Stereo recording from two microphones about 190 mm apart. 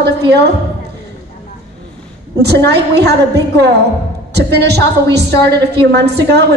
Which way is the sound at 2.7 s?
60° right (ahead or behind).